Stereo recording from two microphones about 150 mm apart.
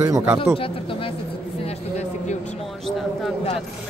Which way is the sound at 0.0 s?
15° right (ahead or behind).